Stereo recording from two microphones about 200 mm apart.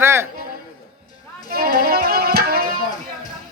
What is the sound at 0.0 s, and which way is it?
Music, 10° right (ahead or behind).